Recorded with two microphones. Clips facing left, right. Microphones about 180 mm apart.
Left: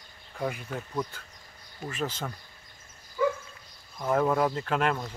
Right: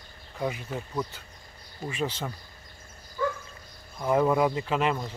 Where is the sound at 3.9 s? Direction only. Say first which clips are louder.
Right 2 dB; 10° right (ahead or behind).